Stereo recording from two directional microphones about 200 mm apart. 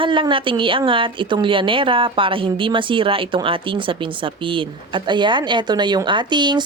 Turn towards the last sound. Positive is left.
turn(degrees=-20)  # may be behind; listen again after turning